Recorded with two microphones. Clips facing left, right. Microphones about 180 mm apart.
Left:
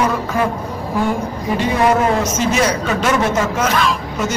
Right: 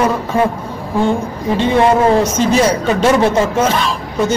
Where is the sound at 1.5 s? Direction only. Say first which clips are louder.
Right 3 dB; 25° right (ahead or behind).